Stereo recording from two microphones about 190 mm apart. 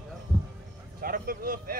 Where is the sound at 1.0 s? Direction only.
50° right (ahead or behind).